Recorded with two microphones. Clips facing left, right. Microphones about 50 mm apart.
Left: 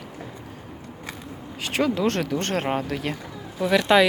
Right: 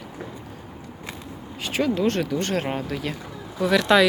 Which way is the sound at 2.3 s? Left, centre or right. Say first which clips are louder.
Left 1 dB; left.